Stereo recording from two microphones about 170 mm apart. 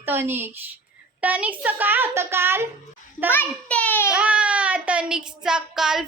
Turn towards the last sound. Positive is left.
turn(degrees=-5)  # may be behind; listen again after turning